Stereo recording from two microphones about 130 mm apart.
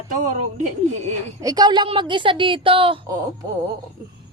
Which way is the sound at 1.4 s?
30° right (ahead or behind).